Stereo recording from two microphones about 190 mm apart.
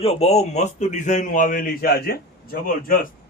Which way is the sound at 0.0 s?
35° left (ahead or behind).